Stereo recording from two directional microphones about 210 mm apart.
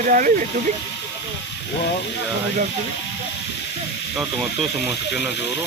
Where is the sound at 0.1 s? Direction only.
40° right (ahead or behind).